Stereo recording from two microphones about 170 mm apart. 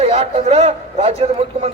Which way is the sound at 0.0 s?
35° right (ahead or behind).